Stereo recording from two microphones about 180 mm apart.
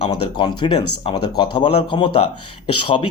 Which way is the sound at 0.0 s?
25° left (ahead or behind).